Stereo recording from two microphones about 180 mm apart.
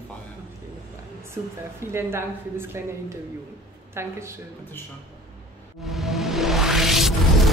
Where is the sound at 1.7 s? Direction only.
15° right (ahead or behind).